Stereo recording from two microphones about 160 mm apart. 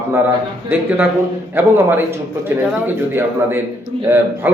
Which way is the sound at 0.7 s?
10° right (ahead or behind).